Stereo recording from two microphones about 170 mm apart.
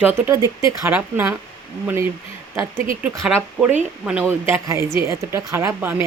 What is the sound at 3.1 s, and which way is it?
Speech, 5° right (ahead or behind).